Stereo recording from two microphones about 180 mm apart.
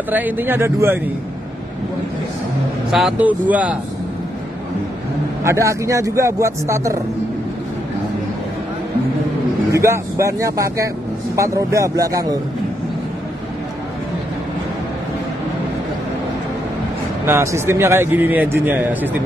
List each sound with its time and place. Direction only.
0.1 s a man's voice: 10° right (ahead or behind)
2.9 s a man's voice: centre (ahead or behind)
5.4 s a man's voice: 15° right (ahead or behind)
9.7 s a man's voice: 15° right (ahead or behind)
17.3 s a man's voice: 15° right (ahead or behind)